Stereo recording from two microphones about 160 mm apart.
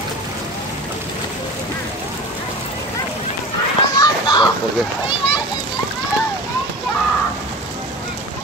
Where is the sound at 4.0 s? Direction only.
25° left (ahead or behind).